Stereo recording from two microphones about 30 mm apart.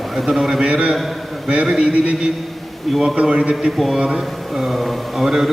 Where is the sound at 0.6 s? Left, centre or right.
Right.